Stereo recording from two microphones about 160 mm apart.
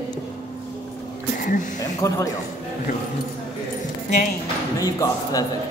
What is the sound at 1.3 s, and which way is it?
Speech, 55° left (ahead or behind).